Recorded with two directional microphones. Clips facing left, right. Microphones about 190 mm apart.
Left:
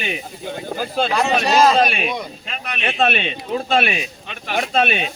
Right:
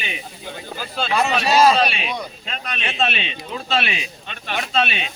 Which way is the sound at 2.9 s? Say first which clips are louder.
Left 5 dB; 55° left (ahead or behind).